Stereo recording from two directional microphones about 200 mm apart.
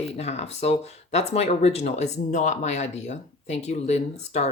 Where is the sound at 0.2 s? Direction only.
35° left (ahead or behind).